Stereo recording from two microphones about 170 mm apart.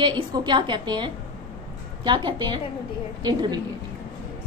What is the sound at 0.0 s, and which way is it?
A woman's voice, 25° right (ahead or behind).